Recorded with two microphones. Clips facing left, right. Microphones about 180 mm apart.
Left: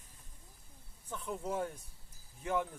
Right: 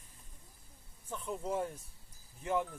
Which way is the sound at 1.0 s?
5° right (ahead or behind).